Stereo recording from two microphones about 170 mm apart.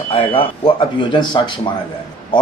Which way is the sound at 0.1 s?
30° left (ahead or behind).